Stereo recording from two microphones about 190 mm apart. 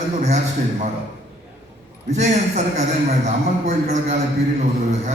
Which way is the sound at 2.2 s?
40° right (ahead or behind).